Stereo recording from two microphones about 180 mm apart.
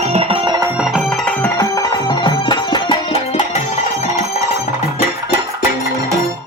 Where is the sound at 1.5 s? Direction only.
20° left (ahead or behind).